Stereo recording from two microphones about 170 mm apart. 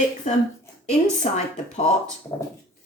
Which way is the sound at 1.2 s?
40° left (ahead or behind).